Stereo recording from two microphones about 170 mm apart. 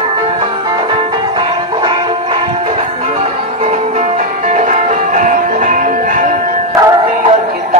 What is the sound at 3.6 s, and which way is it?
Music, 45° right (ahead or behind).